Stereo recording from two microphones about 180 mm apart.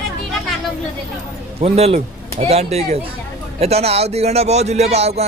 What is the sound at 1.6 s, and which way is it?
A man's voice, 35° right (ahead or behind).